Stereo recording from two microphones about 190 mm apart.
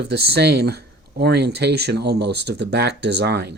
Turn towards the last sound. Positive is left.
turn(degrees=-60)  # may be behind; listen again after turning